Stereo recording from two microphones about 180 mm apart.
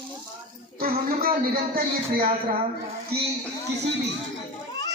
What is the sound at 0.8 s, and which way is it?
A man's voice, 55° right (ahead or behind).